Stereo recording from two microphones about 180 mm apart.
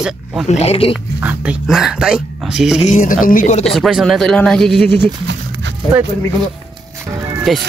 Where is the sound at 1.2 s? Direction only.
10° right (ahead or behind).